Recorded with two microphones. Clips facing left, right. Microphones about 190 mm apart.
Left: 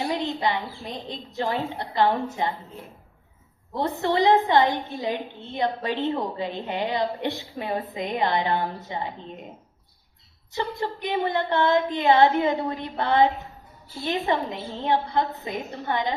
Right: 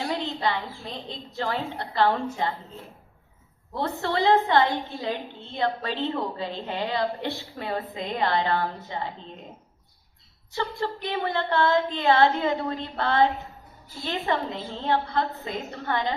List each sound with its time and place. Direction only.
0.0 s a sound: 15° left (ahead or behind)
0.9 s a woman's voice: 20° left (ahead or behind)
10.5 s a woman's voice: 20° left (ahead or behind)